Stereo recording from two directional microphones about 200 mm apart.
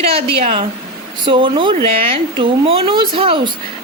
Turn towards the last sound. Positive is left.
turn(degrees=-25)  # may be behind; listen again after turning